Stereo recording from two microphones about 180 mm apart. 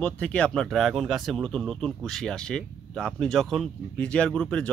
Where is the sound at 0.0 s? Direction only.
5° left (ahead or behind).